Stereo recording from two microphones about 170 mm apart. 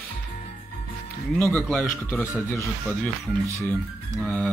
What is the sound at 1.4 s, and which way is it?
Speech, 5° left (ahead or behind).